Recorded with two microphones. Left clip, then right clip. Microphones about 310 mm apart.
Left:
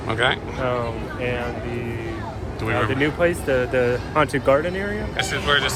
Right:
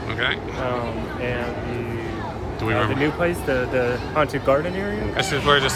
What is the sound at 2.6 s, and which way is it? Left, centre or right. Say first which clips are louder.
Speech: even; centre.